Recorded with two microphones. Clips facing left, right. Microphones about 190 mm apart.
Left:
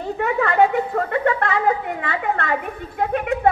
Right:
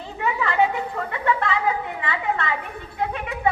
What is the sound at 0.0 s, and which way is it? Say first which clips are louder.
A woman's voice: left 5 dB; 50° left (ahead or behind).